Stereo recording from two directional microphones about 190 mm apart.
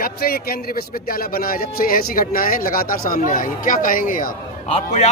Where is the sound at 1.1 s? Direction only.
50° left (ahead or behind).